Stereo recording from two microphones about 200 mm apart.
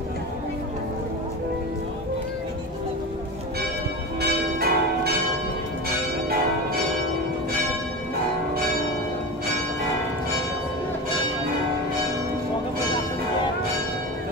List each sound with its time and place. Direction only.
4.2 s church bell: 50° right (ahead or behind)